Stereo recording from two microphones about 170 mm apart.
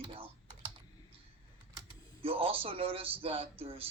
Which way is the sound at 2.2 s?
35° right (ahead or behind).